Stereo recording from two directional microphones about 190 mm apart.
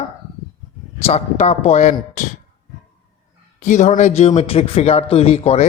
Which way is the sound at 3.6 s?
40° left (ahead or behind).